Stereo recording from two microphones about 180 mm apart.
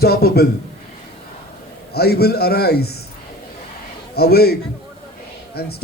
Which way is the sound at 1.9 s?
60° left (ahead or behind).